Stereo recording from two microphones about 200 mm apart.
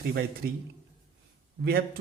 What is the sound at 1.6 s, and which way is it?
Speech, 50° right (ahead or behind).